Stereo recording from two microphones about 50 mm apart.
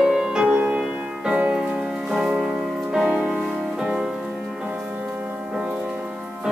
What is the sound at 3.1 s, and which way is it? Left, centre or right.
Music, right.